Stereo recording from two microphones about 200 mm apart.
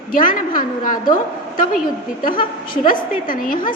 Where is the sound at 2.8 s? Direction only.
45° left (ahead or behind).